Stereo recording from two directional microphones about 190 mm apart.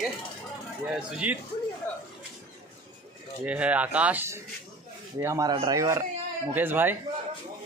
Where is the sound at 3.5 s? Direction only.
5° right (ahead or behind).